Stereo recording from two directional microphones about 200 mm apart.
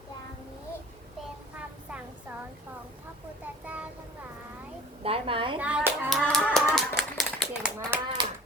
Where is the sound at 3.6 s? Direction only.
5° right (ahead or behind).